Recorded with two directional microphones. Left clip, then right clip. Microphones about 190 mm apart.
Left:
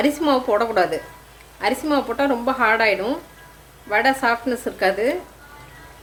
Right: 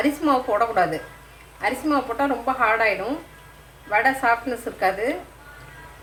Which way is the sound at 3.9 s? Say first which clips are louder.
Left 1 dB; 40° left (ahead or behind).